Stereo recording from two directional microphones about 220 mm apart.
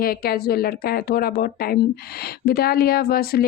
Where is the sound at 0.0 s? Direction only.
45° left (ahead or behind).